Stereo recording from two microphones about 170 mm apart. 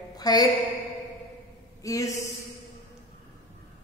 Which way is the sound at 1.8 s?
20° left (ahead or behind).